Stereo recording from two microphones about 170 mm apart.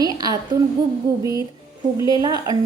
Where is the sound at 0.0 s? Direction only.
20° right (ahead or behind).